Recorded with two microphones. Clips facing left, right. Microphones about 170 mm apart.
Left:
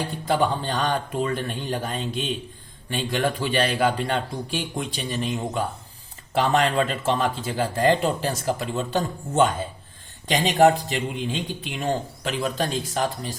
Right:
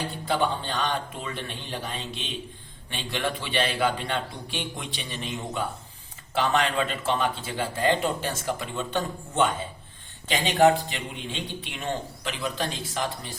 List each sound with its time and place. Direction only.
0.3 s a man's voice: 40° left (ahead or behind)